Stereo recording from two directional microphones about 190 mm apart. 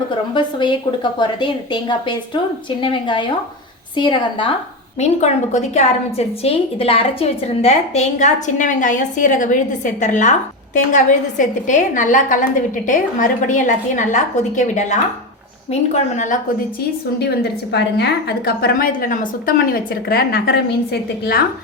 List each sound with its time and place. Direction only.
0.3 s a woman's voice: 25° left (ahead or behind)
4.9 s a woman's voice: 35° left (ahead or behind)
17.2 s a woman's voice: 60° left (ahead or behind)